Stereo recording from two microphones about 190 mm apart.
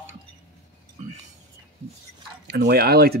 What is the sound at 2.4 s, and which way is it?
Speech, 60° right (ahead or behind).